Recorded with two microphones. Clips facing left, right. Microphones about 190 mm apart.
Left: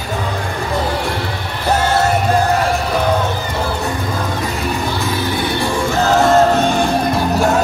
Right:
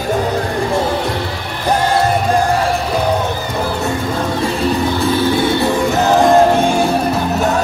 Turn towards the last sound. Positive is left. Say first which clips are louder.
# right 1 dB
turn(degrees=-10)  # may be behind; listen again after turning